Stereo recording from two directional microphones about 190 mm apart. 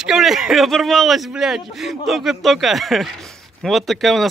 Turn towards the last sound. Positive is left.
turn(degrees=0)  # may be behind; listen again after turning